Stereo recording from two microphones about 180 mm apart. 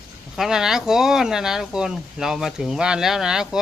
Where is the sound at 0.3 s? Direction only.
5° right (ahead or behind).